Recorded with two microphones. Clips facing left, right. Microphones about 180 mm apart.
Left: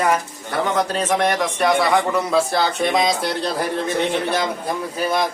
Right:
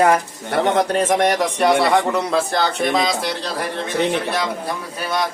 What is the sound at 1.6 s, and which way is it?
Speech, centre (ahead or behind).